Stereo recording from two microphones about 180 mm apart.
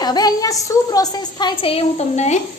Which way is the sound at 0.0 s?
20° left (ahead or behind).